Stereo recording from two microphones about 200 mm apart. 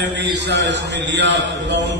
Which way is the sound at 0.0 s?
65° right (ahead or behind).